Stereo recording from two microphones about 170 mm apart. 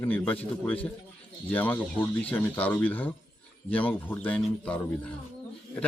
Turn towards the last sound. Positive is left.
turn(degrees=5)  # may be behind; listen again after turning